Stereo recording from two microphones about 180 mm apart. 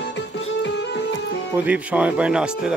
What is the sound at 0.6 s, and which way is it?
Music, 80° left.